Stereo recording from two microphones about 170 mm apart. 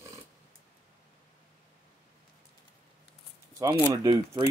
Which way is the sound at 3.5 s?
15° right (ahead or behind).